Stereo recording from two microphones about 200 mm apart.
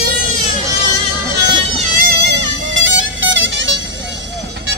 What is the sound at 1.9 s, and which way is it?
Music, 55° right (ahead or behind).